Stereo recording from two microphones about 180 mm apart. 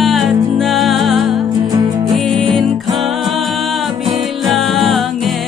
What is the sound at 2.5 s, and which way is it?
Music, centre (ahead or behind).